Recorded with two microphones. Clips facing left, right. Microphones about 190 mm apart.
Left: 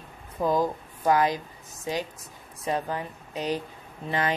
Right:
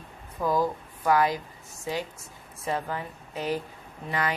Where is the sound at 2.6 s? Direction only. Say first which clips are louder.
Left 2 dB; 20° left (ahead or behind).